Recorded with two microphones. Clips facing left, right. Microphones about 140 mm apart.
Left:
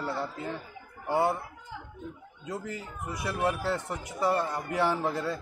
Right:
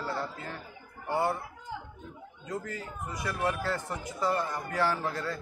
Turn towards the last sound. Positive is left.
turn(degrees=20)  # may be behind; listen again after turning